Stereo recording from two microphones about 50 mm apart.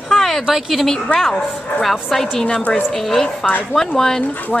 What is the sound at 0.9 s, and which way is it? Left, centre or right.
Speech, centre.